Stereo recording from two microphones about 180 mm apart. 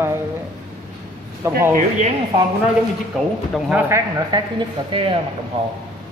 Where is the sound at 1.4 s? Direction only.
15° right (ahead or behind).